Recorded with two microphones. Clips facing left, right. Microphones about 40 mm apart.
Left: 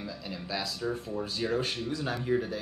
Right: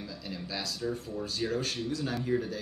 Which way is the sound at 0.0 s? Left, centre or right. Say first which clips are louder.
Left 1 dB; centre.